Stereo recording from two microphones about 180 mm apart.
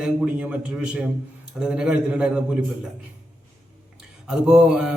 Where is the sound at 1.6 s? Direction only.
5° right (ahead or behind).